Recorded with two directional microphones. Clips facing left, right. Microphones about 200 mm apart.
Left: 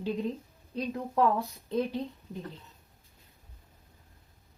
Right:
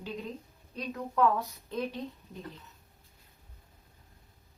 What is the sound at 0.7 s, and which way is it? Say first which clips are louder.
Speech: left 2 dB; 30° left (ahead or behind).